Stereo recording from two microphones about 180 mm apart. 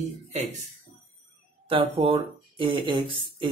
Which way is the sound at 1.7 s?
30° right (ahead or behind).